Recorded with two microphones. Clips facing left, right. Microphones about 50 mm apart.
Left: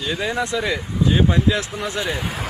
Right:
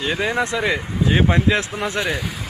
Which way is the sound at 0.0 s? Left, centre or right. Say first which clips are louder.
Right 2 dB; right.